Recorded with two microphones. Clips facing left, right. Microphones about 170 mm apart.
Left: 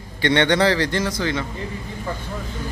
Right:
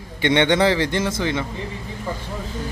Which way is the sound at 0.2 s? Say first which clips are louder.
Right 1 dB; 20° right (ahead or behind).